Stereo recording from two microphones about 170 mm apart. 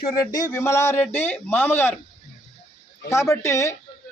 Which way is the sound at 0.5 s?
15° left (ahead or behind).